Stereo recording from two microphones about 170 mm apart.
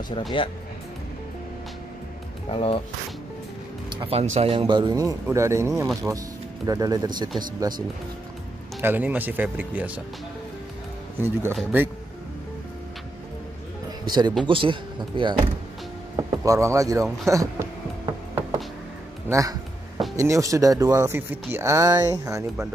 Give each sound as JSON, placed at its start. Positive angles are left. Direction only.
{"t": 0.3, "sound": "speech", "side_deg": 30}
{"t": 2.5, "sound": "speech", "side_deg": 35}
{"t": 3.9, "sound": "speech", "side_deg": -35}
{"t": 8.8, "sound": "speech", "side_deg": -10}
{"t": 11.1, "sound": "speech", "side_deg": -10}
{"t": 14.0, "sound": "speech", "side_deg": -25}
{"t": 19.2, "sound": "speech", "side_deg": -20}